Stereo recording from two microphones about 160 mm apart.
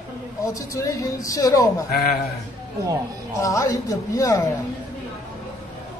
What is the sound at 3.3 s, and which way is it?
A man's voice, 20° left (ahead or behind).